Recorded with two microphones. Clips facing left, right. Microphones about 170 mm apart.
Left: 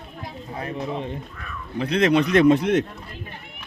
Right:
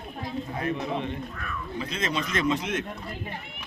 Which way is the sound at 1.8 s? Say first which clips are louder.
Left 12 dB; 65° left (ahead or behind).